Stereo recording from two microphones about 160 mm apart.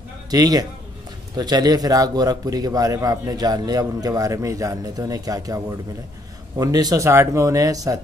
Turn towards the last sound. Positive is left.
turn(degrees=-20)  # may be behind; listen again after turning